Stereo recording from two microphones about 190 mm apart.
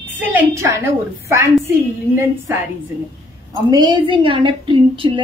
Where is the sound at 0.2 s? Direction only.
10° right (ahead or behind).